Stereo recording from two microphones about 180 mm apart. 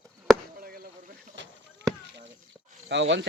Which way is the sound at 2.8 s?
90° right.